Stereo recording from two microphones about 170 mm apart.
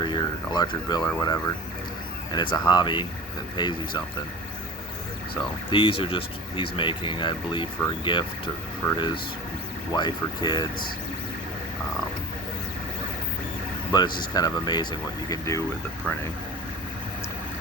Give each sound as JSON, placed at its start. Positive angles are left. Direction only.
{"t": 0.0, "sound": "a sound", "side_deg": 25}
{"t": 2.3, "sound": "speech", "side_deg": 25}
{"t": 5.3, "sound": "speech", "side_deg": 30}
{"t": 13.9, "sound": "speech", "side_deg": 25}